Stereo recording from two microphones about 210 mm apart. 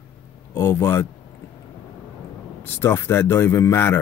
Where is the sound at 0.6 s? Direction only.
10° left (ahead or behind).